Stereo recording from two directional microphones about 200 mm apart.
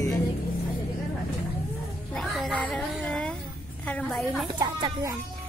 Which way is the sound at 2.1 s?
Centre (ahead or behind).